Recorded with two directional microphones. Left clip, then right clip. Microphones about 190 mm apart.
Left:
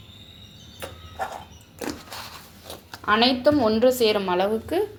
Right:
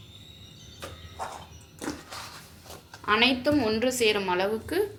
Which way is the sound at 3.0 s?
30° left (ahead or behind).